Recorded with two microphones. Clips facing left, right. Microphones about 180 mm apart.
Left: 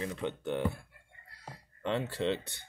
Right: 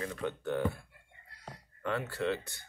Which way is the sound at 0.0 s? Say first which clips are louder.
Left 1 dB; 20° left (ahead or behind).